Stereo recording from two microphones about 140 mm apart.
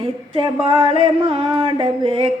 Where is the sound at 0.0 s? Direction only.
40° right (ahead or behind).